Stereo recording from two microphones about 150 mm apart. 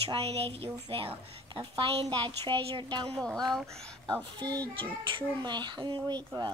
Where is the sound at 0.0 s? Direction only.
40° right (ahead or behind).